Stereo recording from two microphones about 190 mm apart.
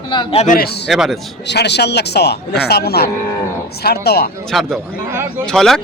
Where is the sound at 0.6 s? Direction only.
60° left (ahead or behind).